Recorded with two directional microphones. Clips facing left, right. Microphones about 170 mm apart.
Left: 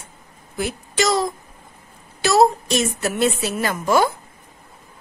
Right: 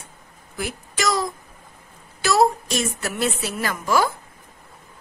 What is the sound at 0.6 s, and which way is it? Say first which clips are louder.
A woman's voice: left 5 dB; 25° left (ahead or behind).